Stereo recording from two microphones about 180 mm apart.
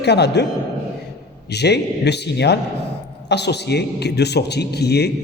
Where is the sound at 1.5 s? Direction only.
65° left (ahead or behind).